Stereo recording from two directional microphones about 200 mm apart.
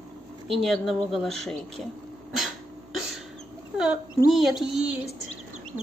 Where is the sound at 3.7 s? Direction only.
5° right (ahead or behind).